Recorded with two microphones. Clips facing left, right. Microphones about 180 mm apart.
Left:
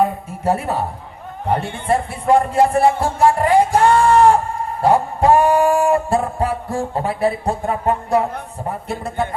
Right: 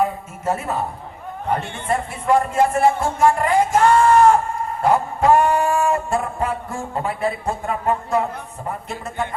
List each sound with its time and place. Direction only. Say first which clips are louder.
0.4 s a man's voice: left 3 dB; 35° left (ahead or behind)
8.9 s a man's voice: left 4 dB; 35° left (ahead or behind)